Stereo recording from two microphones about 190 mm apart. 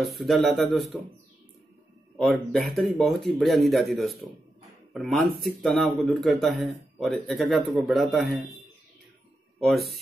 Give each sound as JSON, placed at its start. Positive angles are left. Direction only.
{"t": 0.2, "sound": "speech", "side_deg": 0}
{"t": 2.1, "sound": "speech", "side_deg": 0}
{"t": 9.6, "sound": "speech", "side_deg": 0}